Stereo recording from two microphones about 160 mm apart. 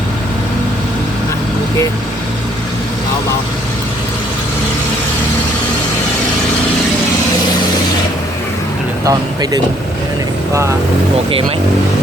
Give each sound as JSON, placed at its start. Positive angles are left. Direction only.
{"t": 9.0, "sound": "speech", "side_deg": -25}